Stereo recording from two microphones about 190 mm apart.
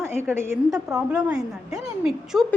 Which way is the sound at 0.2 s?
15° right (ahead or behind).